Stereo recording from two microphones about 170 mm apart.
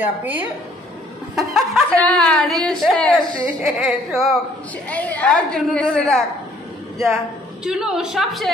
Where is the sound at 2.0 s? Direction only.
5° left (ahead or behind).